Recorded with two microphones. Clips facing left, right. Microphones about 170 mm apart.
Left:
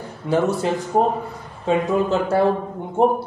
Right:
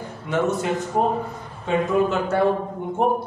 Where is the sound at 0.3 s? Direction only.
35° left (ahead or behind).